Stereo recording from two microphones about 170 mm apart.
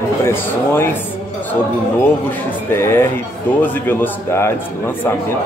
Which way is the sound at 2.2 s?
15° left (ahead or behind).